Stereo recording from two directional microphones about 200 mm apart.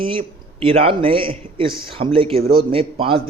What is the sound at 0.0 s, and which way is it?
A man's voice, 25° right (ahead or behind).